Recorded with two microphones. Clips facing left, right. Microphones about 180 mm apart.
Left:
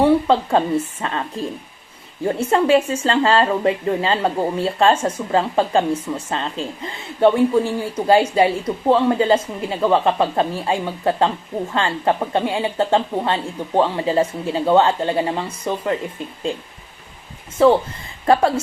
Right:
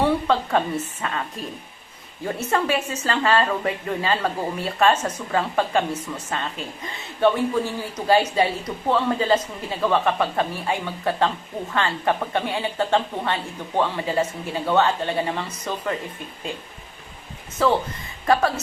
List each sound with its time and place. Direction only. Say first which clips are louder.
0.0 s speech: left 5 dB; 25° left (ahead or behind)
2.2 s speech: left 6 dB; 30° left (ahead or behind)
18.3 s speech: left 4 dB; 25° left (ahead or behind)